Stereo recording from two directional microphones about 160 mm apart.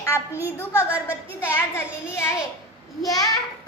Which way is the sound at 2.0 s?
15° left (ahead or behind).